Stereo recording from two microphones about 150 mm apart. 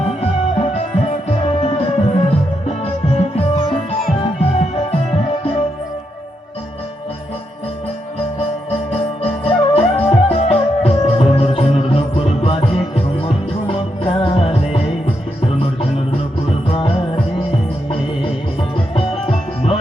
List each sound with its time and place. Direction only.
0.2 s music: 40° left (ahead or behind)
8.4 s music: 40° left (ahead or behind)
16.6 s music: 40° left (ahead or behind)
19.3 s music: 40° left (ahead or behind)